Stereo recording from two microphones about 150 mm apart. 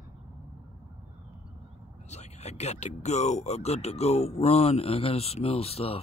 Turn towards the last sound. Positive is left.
turn(degrees=40)  # may be behind; listen again after turning